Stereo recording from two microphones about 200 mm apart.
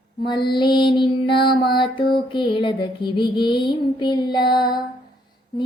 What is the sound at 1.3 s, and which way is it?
Music, 55° left (ahead or behind).